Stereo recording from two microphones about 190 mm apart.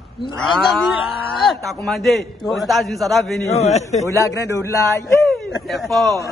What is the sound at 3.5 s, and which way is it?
Speech, 35° left (ahead or behind).